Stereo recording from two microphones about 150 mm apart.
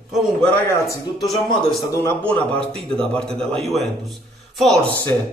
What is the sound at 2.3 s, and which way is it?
A man's voice, 5° left (ahead or behind).